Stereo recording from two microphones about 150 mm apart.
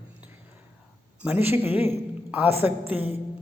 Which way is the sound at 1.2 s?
10° right (ahead or behind).